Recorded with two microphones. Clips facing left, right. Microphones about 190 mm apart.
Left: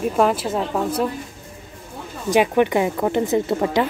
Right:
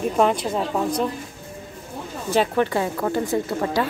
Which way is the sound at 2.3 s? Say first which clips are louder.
Left 4 dB; 15° left (ahead or behind).